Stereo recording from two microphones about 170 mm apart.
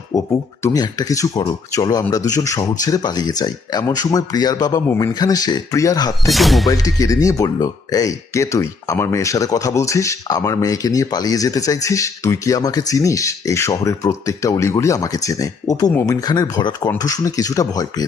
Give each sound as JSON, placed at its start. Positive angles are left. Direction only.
{"t": 0.1, "sound": "speech", "side_deg": 20}
{"t": 6.3, "sound": "speech", "side_deg": 0}
{"t": 6.7, "sound": "speech", "side_deg": 20}